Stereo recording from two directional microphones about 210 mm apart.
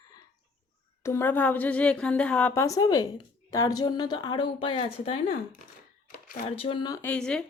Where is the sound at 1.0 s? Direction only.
10° left (ahead or behind).